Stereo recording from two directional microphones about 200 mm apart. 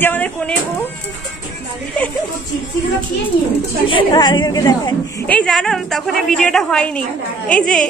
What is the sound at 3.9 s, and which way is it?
A woman's voice, 25° left (ahead or behind).